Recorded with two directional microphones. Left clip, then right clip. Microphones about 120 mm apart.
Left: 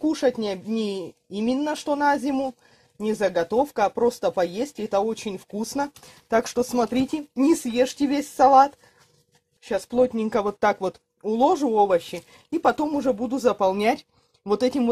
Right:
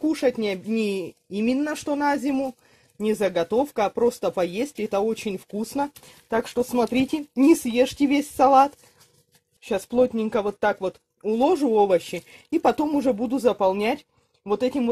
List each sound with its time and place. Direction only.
0.0 s speech: 35° right (ahead or behind); by 1.6 s 20° right (ahead or behind)
1.6 s speech: 35° right (ahead or behind)
5.6 s speech: 15° right (ahead or behind)
6.2 s speech: centre (ahead or behind)
6.7 s speech: 25° right (ahead or behind); by 10.1 s 40° right (ahead or behind)
10.1 s speech: 15° right (ahead or behind)
11.4 s speech: 35° right (ahead or behind)
13.1 s speech: 30° right (ahead or behind)
13.7 s speech: 10° left (ahead or behind)